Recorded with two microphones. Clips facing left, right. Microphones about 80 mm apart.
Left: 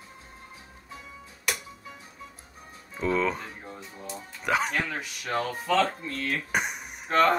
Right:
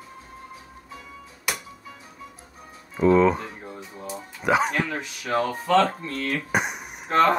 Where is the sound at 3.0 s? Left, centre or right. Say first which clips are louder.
Right 9 dB; right.